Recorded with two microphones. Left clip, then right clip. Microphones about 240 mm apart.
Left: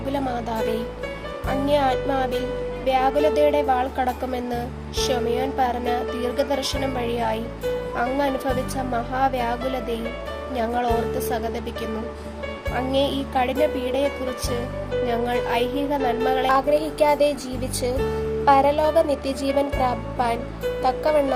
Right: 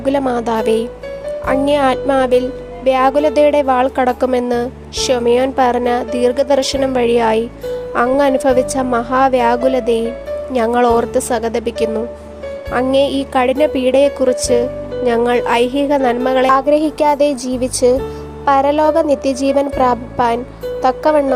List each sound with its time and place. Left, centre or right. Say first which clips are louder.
0.1 s a woman's voice: right 10 dB; right